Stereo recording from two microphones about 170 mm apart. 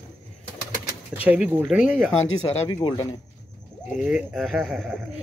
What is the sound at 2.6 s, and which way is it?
Speech, 25° left (ahead or behind).